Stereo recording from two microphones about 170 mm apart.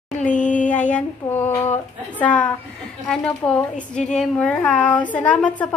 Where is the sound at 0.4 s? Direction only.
50° left (ahead or behind).